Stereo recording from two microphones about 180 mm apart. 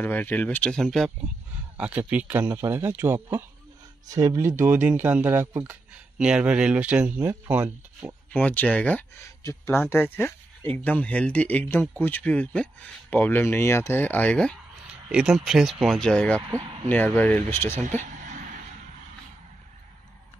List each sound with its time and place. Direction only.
0.0 s speech: 10° left (ahead or behind); by 8.2 s 10° right (ahead or behind)
8.3 s speech: 10° left (ahead or behind)
15.0 s speech: 5° right (ahead or behind)
16.4 s speech: 20° right (ahead or behind)
16.9 s speech: 10° left (ahead or behind)
17.6 s speech: 40° right (ahead or behind)